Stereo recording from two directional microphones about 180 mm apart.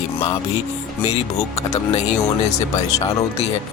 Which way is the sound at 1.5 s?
40° left (ahead or behind).